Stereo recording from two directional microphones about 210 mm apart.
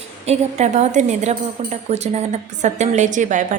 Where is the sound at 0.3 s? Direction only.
35° right (ahead or behind).